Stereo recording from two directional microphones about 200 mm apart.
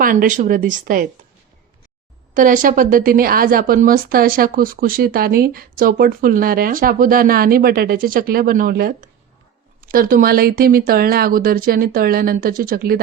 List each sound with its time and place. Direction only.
0.0 s a woman's voice: 45° right (ahead or behind)
2.3 s a woman's voice: 40° right (ahead or behind)